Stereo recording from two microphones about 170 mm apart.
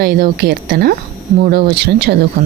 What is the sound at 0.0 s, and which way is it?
Speech, 65° right (ahead or behind).